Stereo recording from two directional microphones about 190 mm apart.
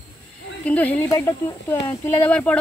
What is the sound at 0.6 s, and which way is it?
Speech, 10° left (ahead or behind).